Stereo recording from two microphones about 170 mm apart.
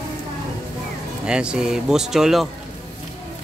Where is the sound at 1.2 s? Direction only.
5° right (ahead or behind).